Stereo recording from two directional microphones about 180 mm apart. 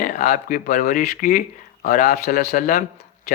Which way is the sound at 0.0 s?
45° left (ahead or behind).